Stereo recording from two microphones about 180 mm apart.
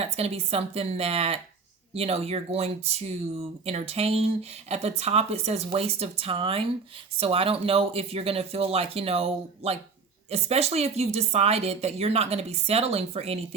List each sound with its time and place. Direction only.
0.0 s speech: 35° right (ahead or behind)